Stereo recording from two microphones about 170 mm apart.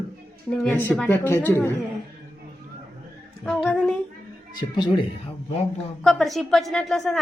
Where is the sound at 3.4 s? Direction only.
5° left (ahead or behind).